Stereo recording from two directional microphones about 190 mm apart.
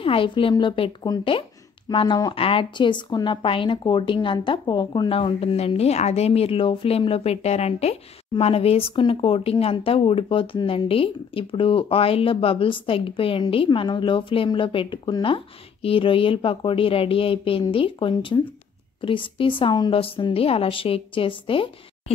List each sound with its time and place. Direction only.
0.0 s speech: 30° left (ahead or behind)